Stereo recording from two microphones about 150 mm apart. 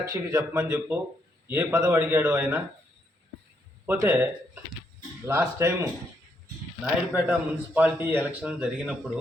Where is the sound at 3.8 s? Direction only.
15° right (ahead or behind).